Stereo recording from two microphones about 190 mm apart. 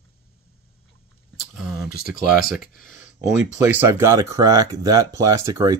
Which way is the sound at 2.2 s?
50° left (ahead or behind).